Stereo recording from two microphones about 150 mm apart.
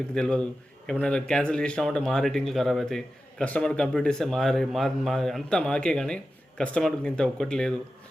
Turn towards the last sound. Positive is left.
turn(degrees=5)  # may be behind; listen again after turning